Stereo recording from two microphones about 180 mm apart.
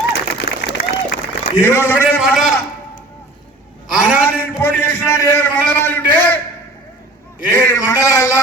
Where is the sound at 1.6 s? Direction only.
15° left (ahead or behind).